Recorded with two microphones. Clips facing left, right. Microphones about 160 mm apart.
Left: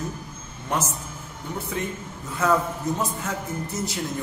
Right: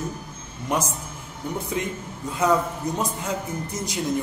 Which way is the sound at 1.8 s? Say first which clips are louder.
Right 2 dB; 20° right (ahead or behind).